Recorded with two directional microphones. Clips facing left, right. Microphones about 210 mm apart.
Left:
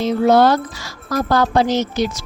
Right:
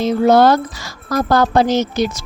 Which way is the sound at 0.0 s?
45° right (ahead or behind).